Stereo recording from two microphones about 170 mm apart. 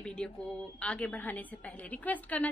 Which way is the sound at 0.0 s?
5° left (ahead or behind).